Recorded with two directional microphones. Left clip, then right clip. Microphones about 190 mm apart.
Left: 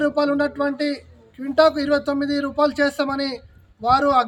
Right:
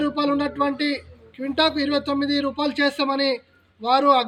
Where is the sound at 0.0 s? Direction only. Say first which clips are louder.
Left 3 dB; 20° left (ahead or behind).